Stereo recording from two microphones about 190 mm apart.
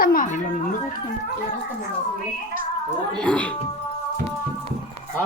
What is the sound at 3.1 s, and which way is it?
Speech, 5° left (ahead or behind).